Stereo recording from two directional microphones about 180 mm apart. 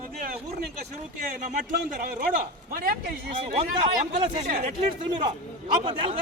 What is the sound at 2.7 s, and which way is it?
Speech, 55° right (ahead or behind).